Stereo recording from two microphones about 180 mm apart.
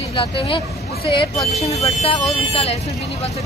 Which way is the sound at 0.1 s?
30° left (ahead or behind).